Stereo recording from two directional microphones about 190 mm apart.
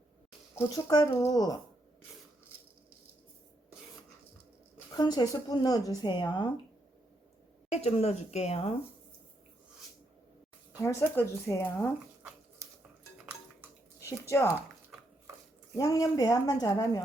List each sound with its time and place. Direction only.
0.5 s speech: 15° left (ahead or behind)
4.9 s speech: 20° left (ahead or behind)
7.7 s a woman's voice: 35° left (ahead or behind)
10.8 s speech: 15° left (ahead or behind)
14.0 s speech: 15° left (ahead or behind)
15.7 s speech: 20° left (ahead or behind)